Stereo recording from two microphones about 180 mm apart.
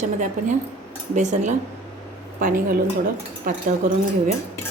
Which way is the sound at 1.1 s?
40° right (ahead or behind).